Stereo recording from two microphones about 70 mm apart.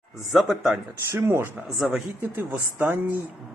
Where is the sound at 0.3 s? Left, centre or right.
Centre.